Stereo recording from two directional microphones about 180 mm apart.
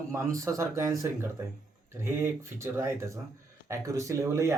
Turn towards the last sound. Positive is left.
turn(degrees=-15)  # may be behind; listen again after turning